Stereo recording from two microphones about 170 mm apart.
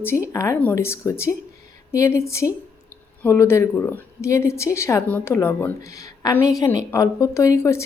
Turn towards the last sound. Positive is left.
turn(degrees=15)  # may be behind; listen again after turning